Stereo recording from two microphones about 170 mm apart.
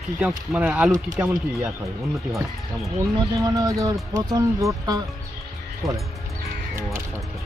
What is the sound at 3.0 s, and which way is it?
Speech, 25° right (ahead or behind).